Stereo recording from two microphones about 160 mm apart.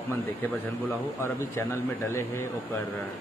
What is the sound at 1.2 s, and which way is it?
A man's voice, 15° left (ahead or behind).